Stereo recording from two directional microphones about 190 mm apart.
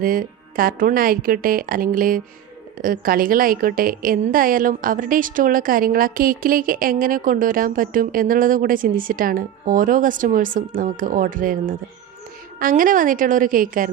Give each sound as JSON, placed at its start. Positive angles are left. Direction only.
{"t": 0.0, "sound": "a woman's voice", "side_deg": -50}